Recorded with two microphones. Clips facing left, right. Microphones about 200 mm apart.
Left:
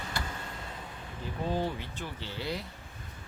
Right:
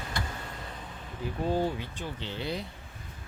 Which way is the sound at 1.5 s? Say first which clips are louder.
Right 3 dB; 15° right (ahead or behind).